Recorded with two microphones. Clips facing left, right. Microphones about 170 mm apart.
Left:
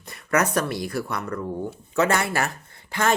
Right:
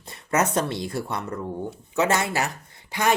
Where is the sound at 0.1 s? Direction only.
25° right (ahead or behind).